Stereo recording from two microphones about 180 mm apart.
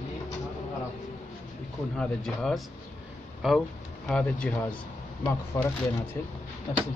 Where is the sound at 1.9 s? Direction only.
Centre (ahead or behind).